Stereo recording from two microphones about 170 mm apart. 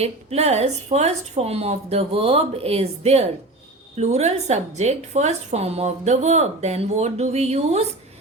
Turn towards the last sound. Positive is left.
turn(degrees=-40)  # may be behind; listen again after turning